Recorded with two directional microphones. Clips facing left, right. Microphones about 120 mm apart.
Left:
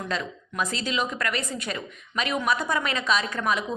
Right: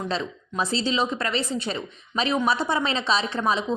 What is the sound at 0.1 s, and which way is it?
A woman's voice, 30° right (ahead or behind).